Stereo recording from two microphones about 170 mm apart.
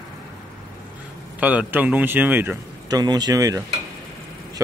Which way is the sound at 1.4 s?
10° right (ahead or behind).